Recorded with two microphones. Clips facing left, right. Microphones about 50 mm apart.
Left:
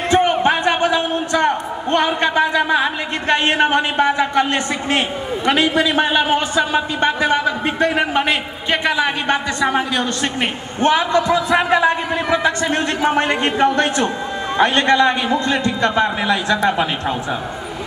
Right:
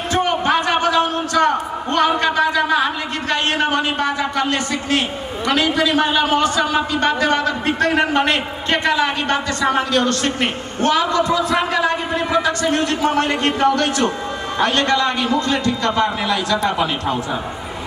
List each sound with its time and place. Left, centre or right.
0.1 s a man's voice: left